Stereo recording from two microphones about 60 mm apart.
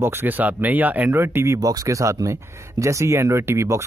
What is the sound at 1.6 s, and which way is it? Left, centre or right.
Speech, right.